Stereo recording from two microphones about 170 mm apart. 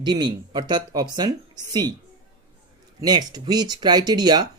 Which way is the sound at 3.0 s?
25° right (ahead or behind).